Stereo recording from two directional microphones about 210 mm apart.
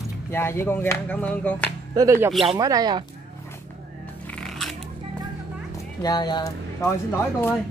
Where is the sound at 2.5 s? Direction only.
15° right (ahead or behind).